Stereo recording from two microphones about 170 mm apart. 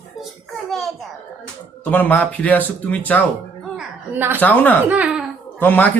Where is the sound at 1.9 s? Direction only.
10° left (ahead or behind).